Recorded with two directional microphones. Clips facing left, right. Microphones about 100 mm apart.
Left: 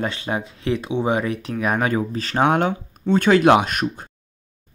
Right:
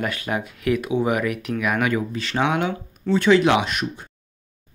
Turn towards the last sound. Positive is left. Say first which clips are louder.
# left 3 dB
turn(degrees=45)  # may be behind; listen again after turning